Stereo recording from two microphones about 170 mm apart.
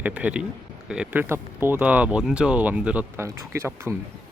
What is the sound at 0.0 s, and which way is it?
Speech, 10° right (ahead or behind).